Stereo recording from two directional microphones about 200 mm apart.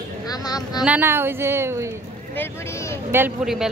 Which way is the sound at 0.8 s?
10° right (ahead or behind).